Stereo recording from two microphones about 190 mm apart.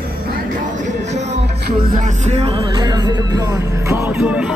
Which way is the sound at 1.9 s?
35° right (ahead or behind).